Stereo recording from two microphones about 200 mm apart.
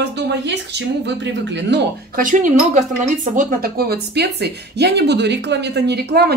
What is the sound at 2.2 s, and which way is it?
Speech, 40° right (ahead or behind).